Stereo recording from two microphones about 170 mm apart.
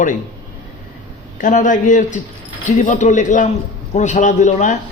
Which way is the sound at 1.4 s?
50° left (ahead or behind).